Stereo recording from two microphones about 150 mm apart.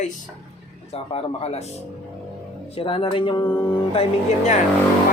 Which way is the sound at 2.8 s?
35° left (ahead or behind).